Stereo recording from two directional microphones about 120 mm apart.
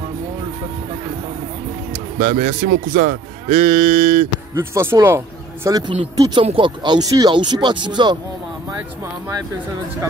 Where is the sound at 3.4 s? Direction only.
45° right (ahead or behind).